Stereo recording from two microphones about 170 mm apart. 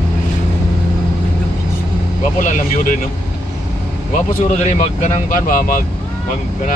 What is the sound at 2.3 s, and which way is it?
Speech, 50° left (ahead or behind).